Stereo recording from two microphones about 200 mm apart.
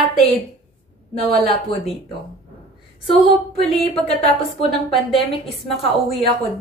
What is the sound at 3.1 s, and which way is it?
A woman's voice, 30° left (ahead or behind).